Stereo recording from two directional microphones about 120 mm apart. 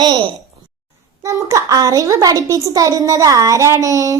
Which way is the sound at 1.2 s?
25° right (ahead or behind).